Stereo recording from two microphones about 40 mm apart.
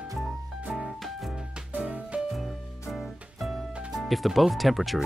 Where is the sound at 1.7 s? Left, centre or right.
Right.